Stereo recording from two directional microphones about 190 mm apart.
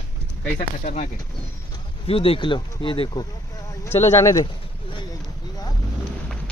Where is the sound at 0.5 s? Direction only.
40° left (ahead or behind).